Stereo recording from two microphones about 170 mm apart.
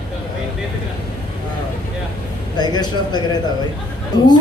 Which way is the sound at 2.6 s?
25° left (ahead or behind).